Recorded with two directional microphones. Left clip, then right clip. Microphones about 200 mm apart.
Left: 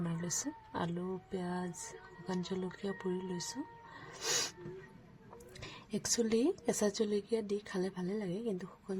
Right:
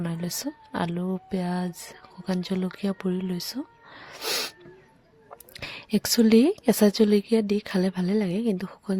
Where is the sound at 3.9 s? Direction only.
35° right (ahead or behind).